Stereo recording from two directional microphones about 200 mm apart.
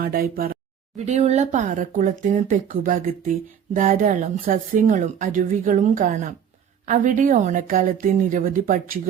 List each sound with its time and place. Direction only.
0.0 s speech: 50° right (ahead or behind)